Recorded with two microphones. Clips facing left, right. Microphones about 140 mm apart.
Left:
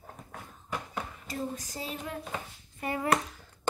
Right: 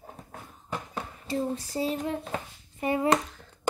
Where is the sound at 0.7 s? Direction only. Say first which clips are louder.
Right 1 dB; 30° right (ahead or behind).